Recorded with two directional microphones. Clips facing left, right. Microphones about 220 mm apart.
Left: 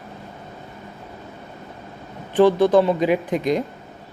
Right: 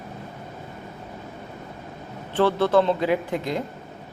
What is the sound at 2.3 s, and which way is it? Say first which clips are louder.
Speech: left 5 dB; 15° left (ahead or behind).